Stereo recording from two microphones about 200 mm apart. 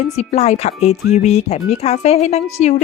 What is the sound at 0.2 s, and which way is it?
Speech, 35° left (ahead or behind).